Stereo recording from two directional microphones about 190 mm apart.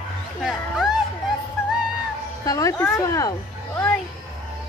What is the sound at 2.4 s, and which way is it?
Speech, 15° left (ahead or behind).